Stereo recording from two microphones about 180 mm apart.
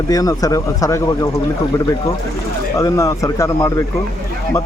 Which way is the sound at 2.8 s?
15° left (ahead or behind).